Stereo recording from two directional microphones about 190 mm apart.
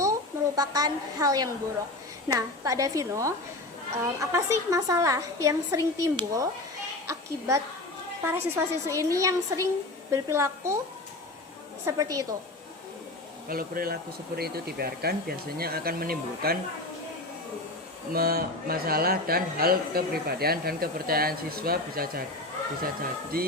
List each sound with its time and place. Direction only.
0.0 s a woman's voice: 20° right (ahead or behind)
11.9 s a woman's voice: 20° right (ahead or behind)
13.5 s speech: 50° right (ahead or behind)
18.1 s speech: 50° right (ahead or behind)
23.3 s speech: 50° right (ahead or behind)